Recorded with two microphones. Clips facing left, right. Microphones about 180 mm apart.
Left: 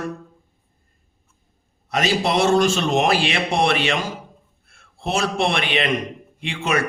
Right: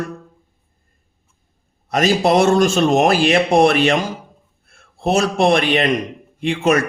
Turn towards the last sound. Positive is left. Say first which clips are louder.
# right 7 dB
turn(degrees=-45)  # may be behind; listen again after turning